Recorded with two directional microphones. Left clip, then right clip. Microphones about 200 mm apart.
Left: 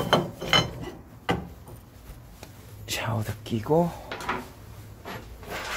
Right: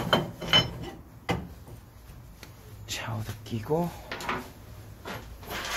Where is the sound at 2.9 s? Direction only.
35° left (ahead or behind).